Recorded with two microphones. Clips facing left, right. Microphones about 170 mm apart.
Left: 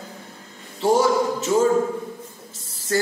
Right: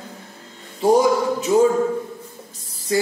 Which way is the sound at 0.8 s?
15° right (ahead or behind).